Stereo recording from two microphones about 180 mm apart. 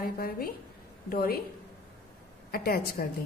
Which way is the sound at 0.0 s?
55° left (ahead or behind).